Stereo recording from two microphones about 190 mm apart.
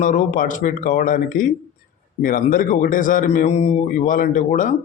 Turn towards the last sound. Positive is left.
turn(degrees=40)  # may be behind; listen again after turning